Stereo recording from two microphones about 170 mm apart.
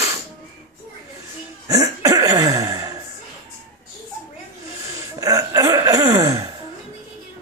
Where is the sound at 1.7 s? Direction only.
20° right (ahead or behind).